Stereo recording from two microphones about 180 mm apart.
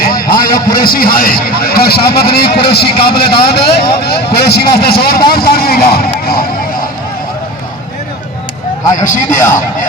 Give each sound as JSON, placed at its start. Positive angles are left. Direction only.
{"t": 0.0, "sound": "a man's voice", "side_deg": 55}
{"t": 9.0, "sound": "a man's voice", "side_deg": 45}